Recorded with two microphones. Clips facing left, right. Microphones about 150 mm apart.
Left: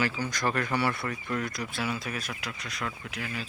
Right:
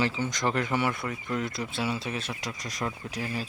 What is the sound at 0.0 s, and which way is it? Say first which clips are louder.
Speech: right 1 dB; 20° right (ahead or behind).